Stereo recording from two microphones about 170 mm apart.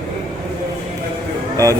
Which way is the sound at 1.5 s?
20° right (ahead or behind).